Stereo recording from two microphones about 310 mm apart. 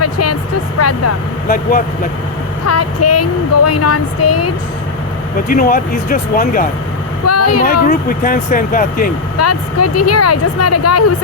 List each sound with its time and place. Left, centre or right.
0.0 s music: left
0.8 s speech: left
2.6 s speech: left
5.5 s speech: left
7.3 s speech: left
7.9 s speech: left
9.4 s speech: left